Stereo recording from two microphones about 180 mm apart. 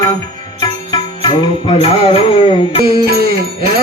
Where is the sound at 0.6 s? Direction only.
25° left (ahead or behind).